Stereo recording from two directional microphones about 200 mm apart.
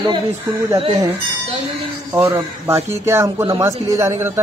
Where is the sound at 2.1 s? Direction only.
15° right (ahead or behind).